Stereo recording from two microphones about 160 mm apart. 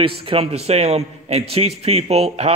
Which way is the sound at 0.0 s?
35° right (ahead or behind).